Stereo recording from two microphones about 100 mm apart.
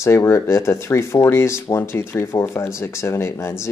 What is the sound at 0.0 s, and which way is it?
Speech, 30° left (ahead or behind).